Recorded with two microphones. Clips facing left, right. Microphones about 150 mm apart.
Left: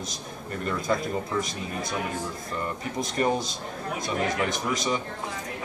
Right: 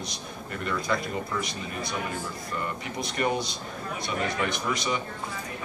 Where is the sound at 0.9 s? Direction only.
35° left (ahead or behind).